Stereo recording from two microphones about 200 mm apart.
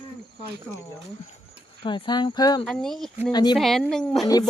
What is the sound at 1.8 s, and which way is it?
Speech, 25° left (ahead or behind).